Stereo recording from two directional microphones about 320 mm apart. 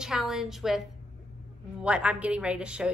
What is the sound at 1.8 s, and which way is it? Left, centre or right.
A woman's voice, centre.